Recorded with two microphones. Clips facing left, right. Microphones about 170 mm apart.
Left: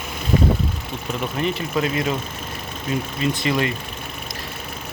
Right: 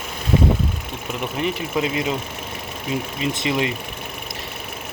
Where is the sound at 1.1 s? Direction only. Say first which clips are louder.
Left 1 dB; 15° right (ahead or behind).